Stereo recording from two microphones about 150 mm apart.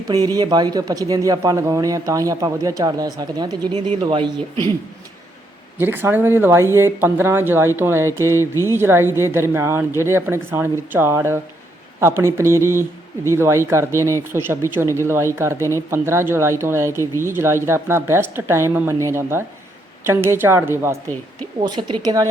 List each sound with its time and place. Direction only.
0.1 s speech: 25° right (ahead or behind)
5.7 s a woman's voice: 15° right (ahead or behind)
21.6 s speech: 30° right (ahead or behind)